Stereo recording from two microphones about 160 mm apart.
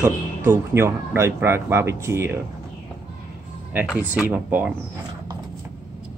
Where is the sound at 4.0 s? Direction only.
10° right (ahead or behind).